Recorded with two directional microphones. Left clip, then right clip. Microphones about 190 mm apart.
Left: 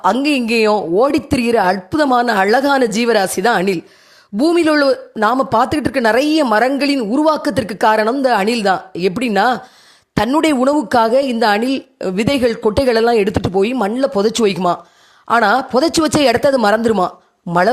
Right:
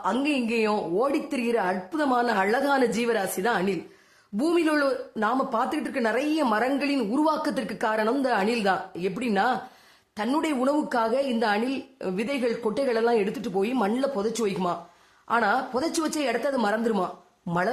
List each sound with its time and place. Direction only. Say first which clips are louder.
0.0 s a woman's voice: left 11 dB; 45° left (ahead or behind)